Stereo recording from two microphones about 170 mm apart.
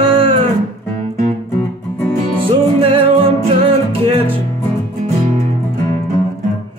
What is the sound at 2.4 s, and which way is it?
Music, 30° right (ahead or behind).